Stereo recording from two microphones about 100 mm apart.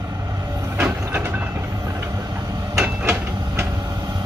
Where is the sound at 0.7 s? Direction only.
15° right (ahead or behind).